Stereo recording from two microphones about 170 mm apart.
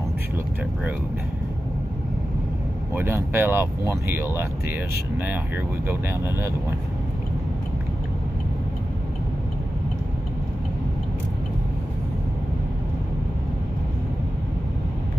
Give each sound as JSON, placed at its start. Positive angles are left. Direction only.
{"t": 2.9, "sound": "speech", "side_deg": -15}
{"t": 5.9, "sound": "speech", "side_deg": -15}